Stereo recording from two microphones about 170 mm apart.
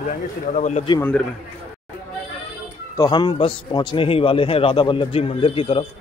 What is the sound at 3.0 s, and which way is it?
A man's voice, 25° left (ahead or behind).